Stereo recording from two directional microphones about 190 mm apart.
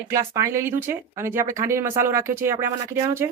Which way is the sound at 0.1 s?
15° right (ahead or behind).